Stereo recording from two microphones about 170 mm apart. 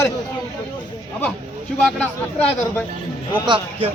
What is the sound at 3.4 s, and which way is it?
Speech, 25° right (ahead or behind).